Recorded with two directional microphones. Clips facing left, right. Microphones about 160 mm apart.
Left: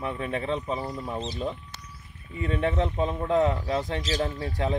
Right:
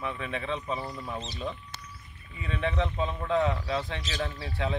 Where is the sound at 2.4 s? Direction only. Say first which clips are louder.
Left 4 dB; 45° left (ahead or behind).